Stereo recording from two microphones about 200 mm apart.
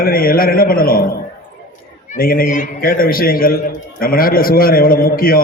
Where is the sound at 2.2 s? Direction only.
45° left (ahead or behind).